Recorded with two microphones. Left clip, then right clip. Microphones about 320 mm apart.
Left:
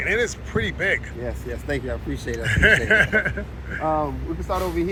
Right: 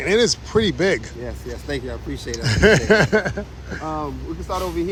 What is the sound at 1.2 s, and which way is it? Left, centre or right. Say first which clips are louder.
Speech: left 1 dB; centre.